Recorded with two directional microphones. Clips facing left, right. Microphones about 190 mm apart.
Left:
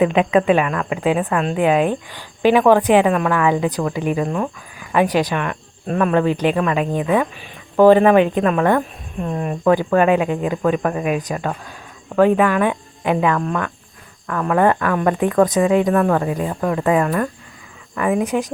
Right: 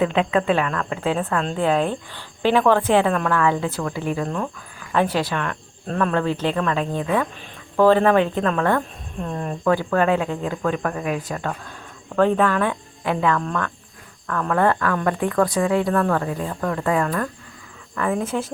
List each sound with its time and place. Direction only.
0.0 s a woman's voice: 15° left (ahead or behind)